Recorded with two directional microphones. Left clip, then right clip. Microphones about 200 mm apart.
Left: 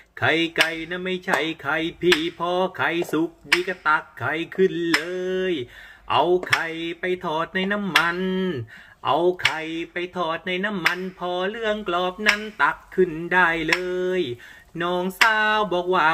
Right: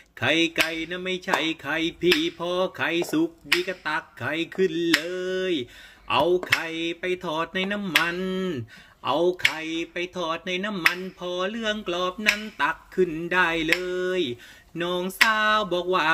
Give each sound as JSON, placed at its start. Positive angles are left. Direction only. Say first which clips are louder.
{"t": 0.2, "sound": "speech", "louder": "left 2 dB", "side_deg": -50}
{"t": 6.6, "sound": "speech", "louder": "left 2 dB", "side_deg": -50}